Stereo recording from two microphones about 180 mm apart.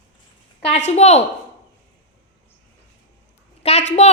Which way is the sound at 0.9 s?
35° left (ahead or behind).